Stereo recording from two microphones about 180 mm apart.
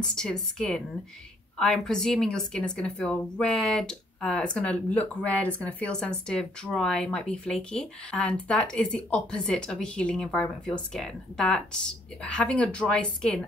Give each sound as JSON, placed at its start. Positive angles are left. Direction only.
{"t": 0.0, "sound": "a woman's voice", "side_deg": 5}